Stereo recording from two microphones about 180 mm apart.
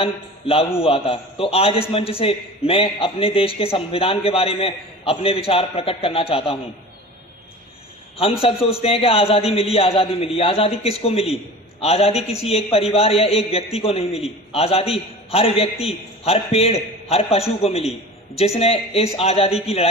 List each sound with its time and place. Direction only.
0.0 s a man's voice: 30° left (ahead or behind)
8.2 s a man's voice: 30° left (ahead or behind)